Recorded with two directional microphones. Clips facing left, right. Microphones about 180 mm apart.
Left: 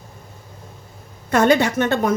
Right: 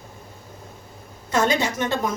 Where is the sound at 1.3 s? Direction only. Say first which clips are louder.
Left 6 dB; 60° left (ahead or behind).